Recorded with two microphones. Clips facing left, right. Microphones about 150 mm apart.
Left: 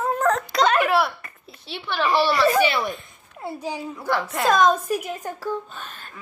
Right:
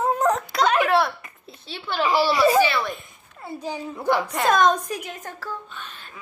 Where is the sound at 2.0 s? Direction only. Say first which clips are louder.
Even; 10° right (ahead or behind).